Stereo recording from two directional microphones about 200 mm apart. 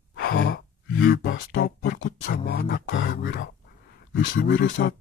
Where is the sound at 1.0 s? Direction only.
50° left (ahead or behind).